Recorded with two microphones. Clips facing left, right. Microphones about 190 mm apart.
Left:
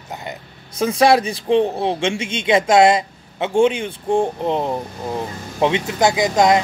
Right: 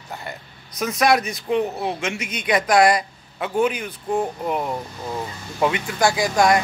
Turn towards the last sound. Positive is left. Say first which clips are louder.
# left 3 dB
turn(degrees=20)  # may be behind; listen again after turning